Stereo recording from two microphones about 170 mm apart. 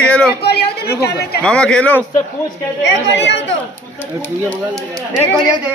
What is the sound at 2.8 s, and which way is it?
Speech, 90° left.